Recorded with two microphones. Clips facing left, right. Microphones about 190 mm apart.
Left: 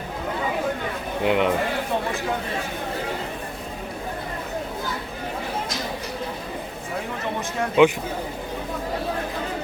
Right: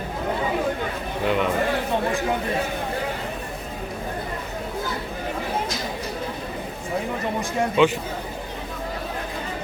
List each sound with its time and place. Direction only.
1.2 s a man's voice: 20° left (ahead or behind)
7.8 s a man's voice: 15° left (ahead or behind)